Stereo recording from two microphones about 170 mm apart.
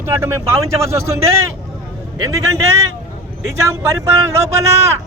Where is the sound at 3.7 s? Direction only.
15° right (ahead or behind).